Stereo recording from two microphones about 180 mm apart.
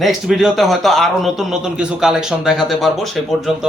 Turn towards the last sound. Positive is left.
turn(degrees=0)  # may be behind; listen again after turning